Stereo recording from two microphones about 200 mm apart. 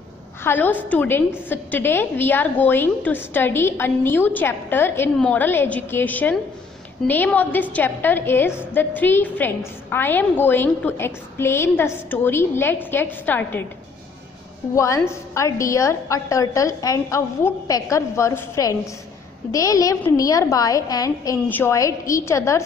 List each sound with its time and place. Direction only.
0.4 s a woman's voice: 10° left (ahead or behind)
14.8 s a woman's voice: 15° left (ahead or behind)